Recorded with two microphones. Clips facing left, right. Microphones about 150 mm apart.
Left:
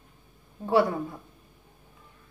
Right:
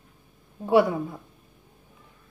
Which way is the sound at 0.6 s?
15° right (ahead or behind).